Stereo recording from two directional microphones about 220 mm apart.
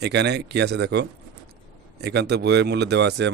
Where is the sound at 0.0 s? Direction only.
50° right (ahead or behind).